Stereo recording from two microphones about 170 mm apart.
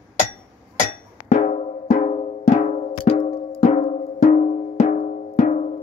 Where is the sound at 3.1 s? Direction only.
40° left (ahead or behind).